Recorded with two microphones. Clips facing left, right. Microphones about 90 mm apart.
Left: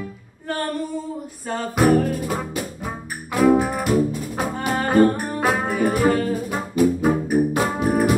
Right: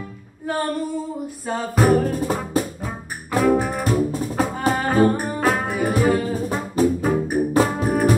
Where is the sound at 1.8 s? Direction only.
Centre (ahead or behind).